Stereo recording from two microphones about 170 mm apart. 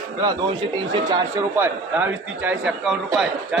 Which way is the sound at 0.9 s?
25° right (ahead or behind).